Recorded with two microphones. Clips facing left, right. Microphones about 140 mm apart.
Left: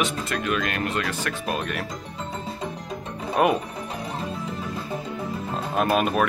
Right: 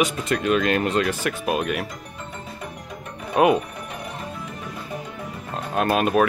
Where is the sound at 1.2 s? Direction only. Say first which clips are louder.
Right 4 dB; 10° right (ahead or behind).